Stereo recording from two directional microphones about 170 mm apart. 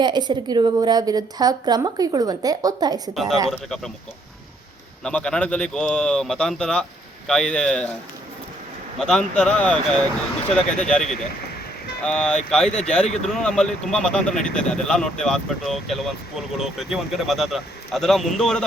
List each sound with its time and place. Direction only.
0.0 s a woman's voice: 25° right (ahead or behind)
3.2 s speech: centre (ahead or behind)
5.0 s speech: 5° left (ahead or behind)
9.0 s speech: 5° left (ahead or behind)